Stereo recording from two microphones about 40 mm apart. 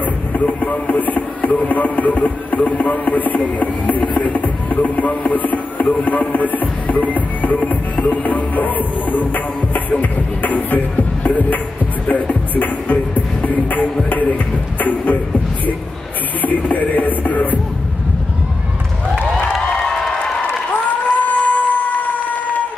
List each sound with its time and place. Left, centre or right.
0.0 s speech: left
9.8 s music: left
14.0 s a sound: left
14.8 s speech: left
16.3 s music: left
19.9 s crowd: centre
21.2 s a sound: left